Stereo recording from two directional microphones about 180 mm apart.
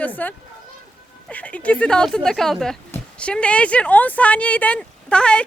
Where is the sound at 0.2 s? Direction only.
10° left (ahead or behind).